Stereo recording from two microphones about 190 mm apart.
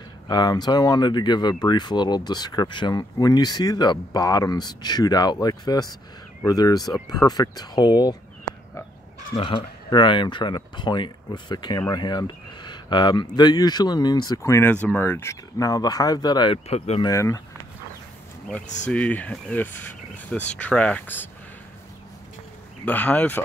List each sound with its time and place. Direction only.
0.3 s speech: 20° left (ahead or behind)
9.3 s speech: 30° left (ahead or behind)
16.6 s speech: 35° left (ahead or behind)
17.1 s speech: 15° left (ahead or behind)
18.9 s speech: 5° left (ahead or behind)
22.8 s speech: 10° left (ahead or behind)